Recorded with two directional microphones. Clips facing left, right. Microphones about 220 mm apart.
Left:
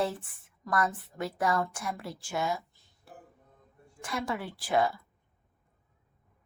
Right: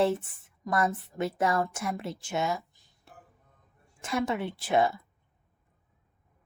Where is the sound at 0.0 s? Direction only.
25° right (ahead or behind).